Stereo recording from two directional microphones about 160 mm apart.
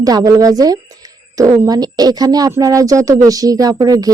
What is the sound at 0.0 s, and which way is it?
A woman's voice, 20° right (ahead or behind).